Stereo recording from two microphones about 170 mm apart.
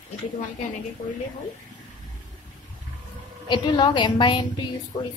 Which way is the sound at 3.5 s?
25° left (ahead or behind).